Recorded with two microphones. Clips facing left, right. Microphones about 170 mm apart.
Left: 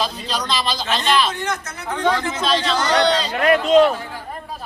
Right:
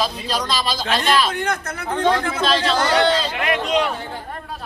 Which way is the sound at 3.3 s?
40° left (ahead or behind).